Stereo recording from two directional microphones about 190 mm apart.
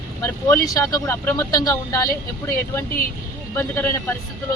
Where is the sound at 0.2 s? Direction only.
15° left (ahead or behind).